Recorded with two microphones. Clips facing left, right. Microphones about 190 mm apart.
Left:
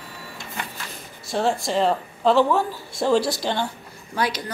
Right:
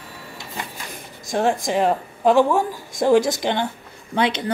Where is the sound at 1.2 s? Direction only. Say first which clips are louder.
Right 2 dB; 15° right (ahead or behind).